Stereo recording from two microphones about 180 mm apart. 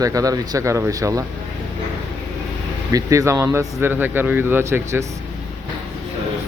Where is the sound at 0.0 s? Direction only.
20° right (ahead or behind).